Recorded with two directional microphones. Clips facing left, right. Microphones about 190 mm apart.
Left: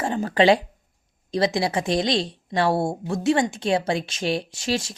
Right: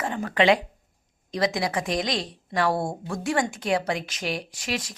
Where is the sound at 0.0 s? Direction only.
30° left (ahead or behind).